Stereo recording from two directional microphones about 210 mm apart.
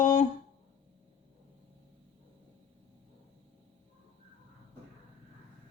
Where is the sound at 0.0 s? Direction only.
35° left (ahead or behind).